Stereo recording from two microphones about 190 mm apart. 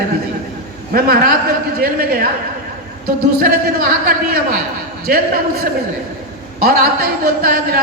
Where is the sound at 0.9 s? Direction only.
50° right (ahead or behind).